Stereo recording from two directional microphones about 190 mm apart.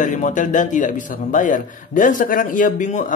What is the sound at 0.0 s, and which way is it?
A man's voice, 40° left (ahead or behind).